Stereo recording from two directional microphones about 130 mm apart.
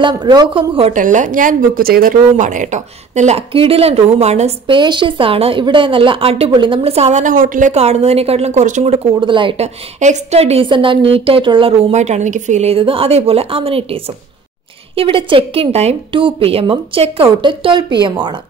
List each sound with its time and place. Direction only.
0.0 s a woman's voice: 30° right (ahead or behind)
0.9 s speech: 80° right; by 4.6 s 55° right (ahead or behind)
4.6 s a woman's voice: 35° right (ahead or behind); by 9.1 s 55° right (ahead or behind)
9.2 s a woman's voice: 40° right (ahead or behind)
9.6 s a woman's voice: 65° right (ahead or behind); by 11.7 s 40° right (ahead or behind)
11.9 s a woman's voice: 65° right (ahead or behind); by 14.1 s 45° right (ahead or behind)
15.2 s a woman's voice: 45° right (ahead or behind)
16.1 s a woman's voice: 40° right (ahead or behind)